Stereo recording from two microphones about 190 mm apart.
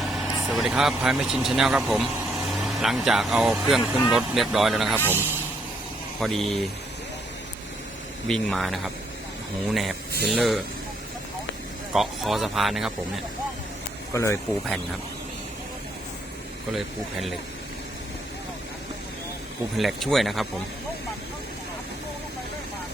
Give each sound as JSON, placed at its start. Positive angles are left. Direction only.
{"t": 0.0, "sound": "a man's voice", "side_deg": 0}
{"t": 6.1, "sound": "speech", "side_deg": 0}
{"t": 8.3, "sound": "speech", "side_deg": 0}
{"t": 10.1, "sound": "speech", "side_deg": -55}
{"t": 10.3, "sound": "speech", "side_deg": 0}
{"t": 11.9, "sound": "speech", "side_deg": 0}
{"t": 14.1, "sound": "speech", "side_deg": 15}
{"t": 16.7, "sound": "speech", "side_deg": 0}
{"t": 19.7, "sound": "speech", "side_deg": 0}